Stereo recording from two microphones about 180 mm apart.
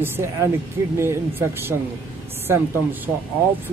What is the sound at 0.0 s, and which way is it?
Speech, 15° right (ahead or behind).